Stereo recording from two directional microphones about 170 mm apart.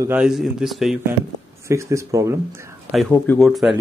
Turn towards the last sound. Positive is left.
turn(degrees=0)  # may be behind; listen again after turning